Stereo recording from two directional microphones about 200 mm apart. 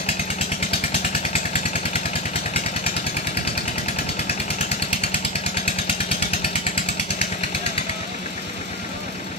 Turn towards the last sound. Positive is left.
turn(degrees=30)  # may be behind; listen again after turning